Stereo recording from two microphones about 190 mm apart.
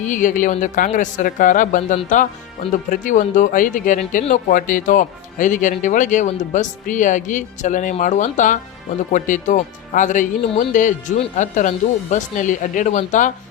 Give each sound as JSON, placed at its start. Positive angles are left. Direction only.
{"t": 0.0, "sound": "speech", "side_deg": 40}